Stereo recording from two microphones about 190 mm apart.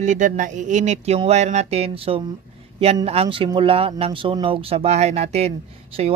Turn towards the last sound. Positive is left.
turn(degrees=-35)  # may be behind; listen again after turning